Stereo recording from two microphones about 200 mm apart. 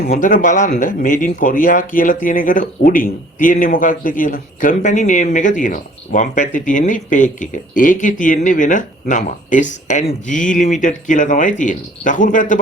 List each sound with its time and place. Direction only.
0.1 s speech: 45° left (ahead or behind)